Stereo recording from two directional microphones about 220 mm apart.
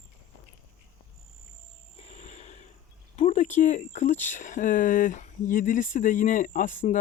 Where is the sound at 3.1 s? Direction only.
30° left (ahead or behind).